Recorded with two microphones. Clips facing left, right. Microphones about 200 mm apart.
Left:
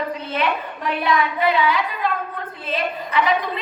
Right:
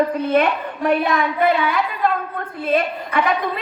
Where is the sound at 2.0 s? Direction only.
50° right (ahead or behind).